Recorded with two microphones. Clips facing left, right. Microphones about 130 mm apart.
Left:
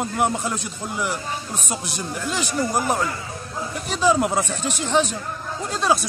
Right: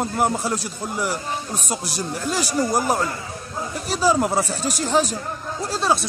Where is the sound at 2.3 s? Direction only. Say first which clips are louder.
Right 2 dB; 40° right (ahead or behind).